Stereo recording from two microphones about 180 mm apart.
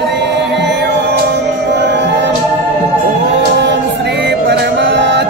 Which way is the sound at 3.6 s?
70° right (ahead or behind).